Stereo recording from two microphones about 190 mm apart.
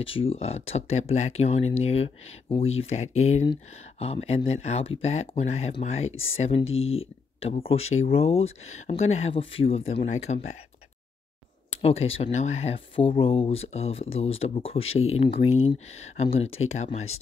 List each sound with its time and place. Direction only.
0.0 s speech: 30° left (ahead or behind)
6.6 s speech: 90° left
7.3 s speech: 30° left (ahead or behind)
11.7 s speech: 35° left (ahead or behind)